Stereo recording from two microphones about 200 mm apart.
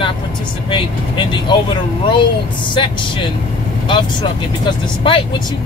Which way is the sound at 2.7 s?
25° left (ahead or behind).